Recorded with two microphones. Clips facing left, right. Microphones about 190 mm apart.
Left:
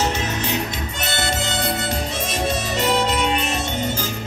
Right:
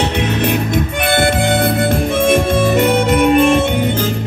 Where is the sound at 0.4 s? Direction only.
55° right (ahead or behind).